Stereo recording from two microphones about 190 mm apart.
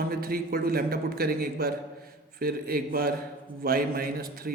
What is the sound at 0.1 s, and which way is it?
A man's voice, 50° right (ahead or behind).